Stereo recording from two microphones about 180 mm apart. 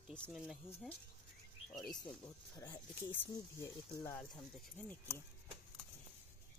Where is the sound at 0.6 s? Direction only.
15° left (ahead or behind).